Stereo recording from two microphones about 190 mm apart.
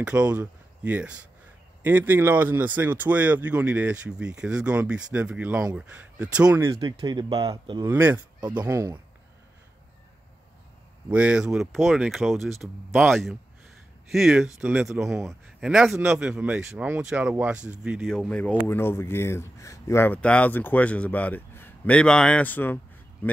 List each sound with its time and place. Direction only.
0.0 s speech: 5° right (ahead or behind); by 7.8 s 25° right (ahead or behind)
7.8 s speech: 10° right (ahead or behind)
11.1 s speech: 5° right (ahead or behind)